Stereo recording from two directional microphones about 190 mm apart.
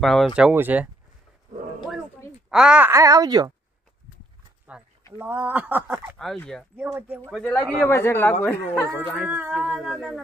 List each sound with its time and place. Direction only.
0.0 s speech: centre (ahead or behind)
2.5 s speech: 5° right (ahead or behind); by 3.5 s 20° right (ahead or behind)
4.7 s a sound: 5° right (ahead or behind)
5.2 s speech: 5° right (ahead or behind)
6.1 s speech: centre (ahead or behind)
6.8 s speech: 10° right (ahead or behind)
7.5 s speech: 10° left (ahead or behind)
9.1 s speech: 5° right (ahead or behind)